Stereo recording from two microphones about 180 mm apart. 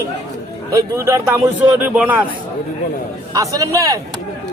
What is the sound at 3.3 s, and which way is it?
Speech, 20° right (ahead or behind).